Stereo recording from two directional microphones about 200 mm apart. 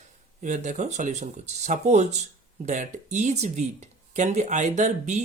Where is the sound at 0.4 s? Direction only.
40° right (ahead or behind).